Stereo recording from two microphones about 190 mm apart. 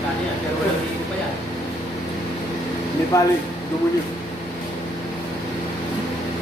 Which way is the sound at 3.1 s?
20° left (ahead or behind).